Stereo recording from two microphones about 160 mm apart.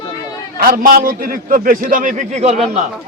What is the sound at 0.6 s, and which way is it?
A man's voice, 60° right (ahead or behind).